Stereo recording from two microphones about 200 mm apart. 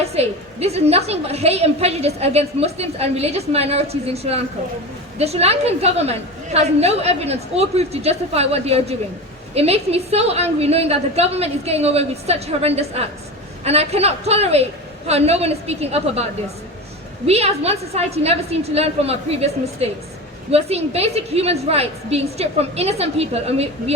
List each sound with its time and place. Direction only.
0.0 s a woman's voice: 30° right (ahead or behind)
17.2 s a woman's voice: 30° right (ahead or behind)